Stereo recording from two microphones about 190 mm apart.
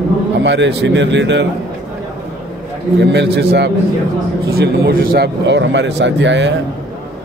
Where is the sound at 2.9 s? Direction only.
60° right (ahead or behind).